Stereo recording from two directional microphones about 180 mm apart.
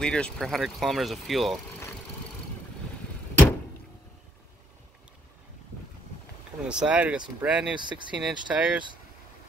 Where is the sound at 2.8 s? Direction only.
5° left (ahead or behind).